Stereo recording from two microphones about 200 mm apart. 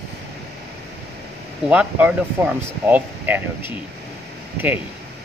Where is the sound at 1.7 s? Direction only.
5° right (ahead or behind).